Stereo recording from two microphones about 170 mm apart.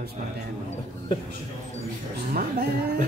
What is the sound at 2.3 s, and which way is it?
Speech, 60° right (ahead or behind).